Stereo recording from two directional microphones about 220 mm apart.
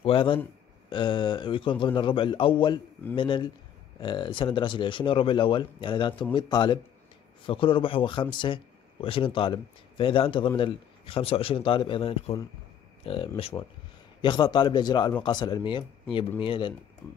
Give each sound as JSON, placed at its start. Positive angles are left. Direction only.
{"t": 0.0, "sound": "speech", "side_deg": 25}